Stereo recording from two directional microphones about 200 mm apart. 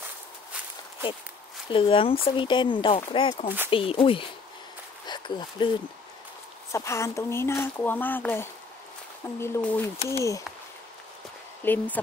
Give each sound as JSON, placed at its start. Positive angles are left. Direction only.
{"t": 1.7, "sound": "speech", "side_deg": 25}
{"t": 3.4, "sound": "speech", "side_deg": -10}
{"t": 3.7, "sound": "speech", "side_deg": 25}
{"t": 11.6, "sound": "speech", "side_deg": 10}